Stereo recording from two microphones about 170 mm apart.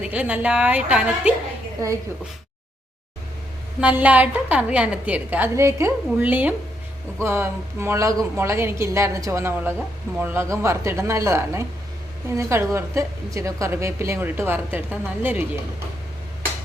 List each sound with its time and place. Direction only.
0.0 s a woman's voice: 10° right (ahead or behind)
3.8 s a woman's voice: 10° right (ahead or behind)